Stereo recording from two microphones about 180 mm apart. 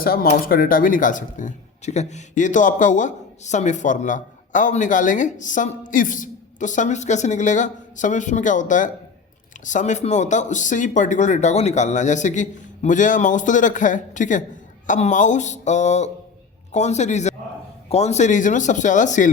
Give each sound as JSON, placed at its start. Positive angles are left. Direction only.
{"t": 0.0, "sound": "speech", "side_deg": 55}